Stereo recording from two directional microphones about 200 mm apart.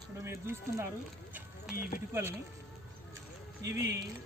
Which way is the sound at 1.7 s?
45° left (ahead or behind).